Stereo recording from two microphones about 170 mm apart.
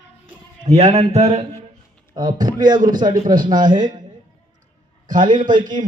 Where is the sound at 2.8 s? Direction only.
50° right (ahead or behind).